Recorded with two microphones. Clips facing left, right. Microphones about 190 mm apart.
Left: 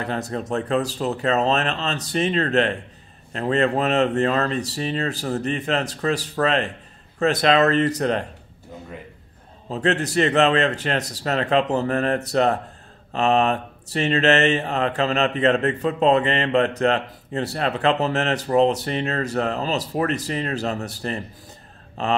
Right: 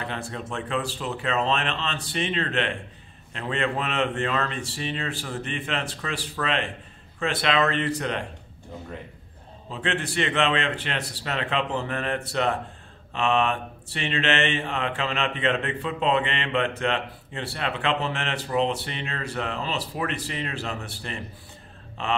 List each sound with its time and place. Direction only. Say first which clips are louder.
0.0 s mantra: left 6 dB; 40° left (ahead or behind)
9.7 s mantra: left 7 dB; 40° left (ahead or behind)